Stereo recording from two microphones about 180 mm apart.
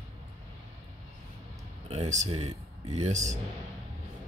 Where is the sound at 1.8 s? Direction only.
40° right (ahead or behind).